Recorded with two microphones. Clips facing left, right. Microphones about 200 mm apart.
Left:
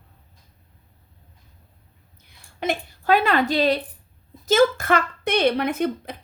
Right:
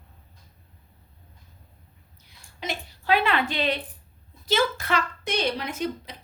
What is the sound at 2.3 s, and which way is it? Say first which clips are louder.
A woman's voice: left 8 dB; 55° left (ahead or behind).